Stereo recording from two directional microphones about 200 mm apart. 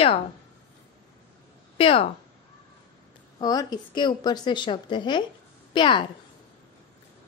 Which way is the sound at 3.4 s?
20° left (ahead or behind).